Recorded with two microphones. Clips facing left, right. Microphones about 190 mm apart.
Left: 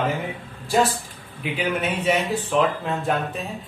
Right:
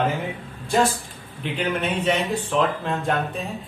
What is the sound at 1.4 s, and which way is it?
Speech, 5° left (ahead or behind).